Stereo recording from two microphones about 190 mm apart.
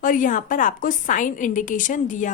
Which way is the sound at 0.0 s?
45° left (ahead or behind).